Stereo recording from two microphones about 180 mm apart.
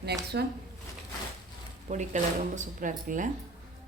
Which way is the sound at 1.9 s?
45° right (ahead or behind).